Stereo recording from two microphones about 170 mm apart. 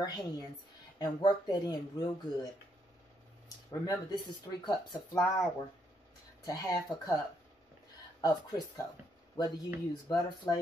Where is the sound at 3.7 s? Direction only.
20° left (ahead or behind).